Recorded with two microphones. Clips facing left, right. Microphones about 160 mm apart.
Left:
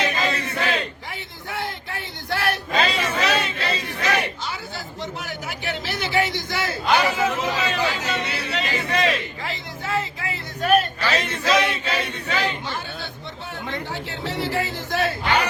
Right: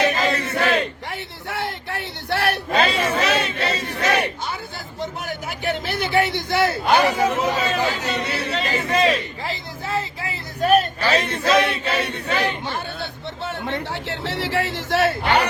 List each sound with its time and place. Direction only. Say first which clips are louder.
0.1 s a sound: right 3 dB; 55° right (ahead or behind); by 8.1 s 40° right (ahead or behind)
8.3 s chatter: right 3 dB; 55° right (ahead or behind)
12.3 s chatter: right 2 dB; 60° right (ahead or behind)
13.4 s speech: right 4 dB; 75° right (ahead or behind)